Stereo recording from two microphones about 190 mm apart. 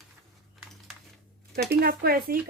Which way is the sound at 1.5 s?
55° right (ahead or behind).